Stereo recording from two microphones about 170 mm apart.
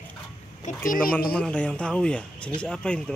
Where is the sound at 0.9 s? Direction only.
60° left (ahead or behind).